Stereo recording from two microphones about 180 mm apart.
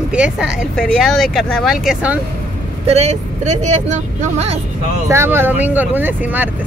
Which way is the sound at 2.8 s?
40° right (ahead or behind).